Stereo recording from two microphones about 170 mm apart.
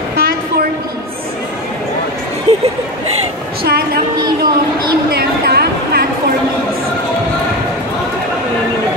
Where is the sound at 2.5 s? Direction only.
35° right (ahead or behind).